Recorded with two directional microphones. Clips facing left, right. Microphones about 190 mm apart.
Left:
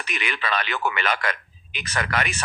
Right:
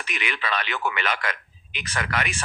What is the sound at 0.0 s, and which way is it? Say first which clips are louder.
Speech: left 1 dB; 40° left (ahead or behind).